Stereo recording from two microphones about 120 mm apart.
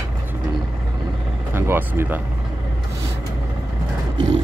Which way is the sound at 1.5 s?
20° right (ahead or behind).